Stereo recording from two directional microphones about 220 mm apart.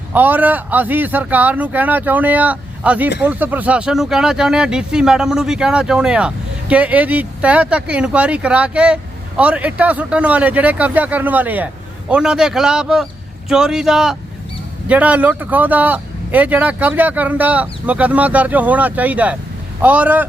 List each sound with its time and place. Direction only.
0.1 s speech: 10° right (ahead or behind)